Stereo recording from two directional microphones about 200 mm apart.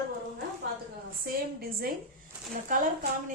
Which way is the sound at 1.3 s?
50° right (ahead or behind).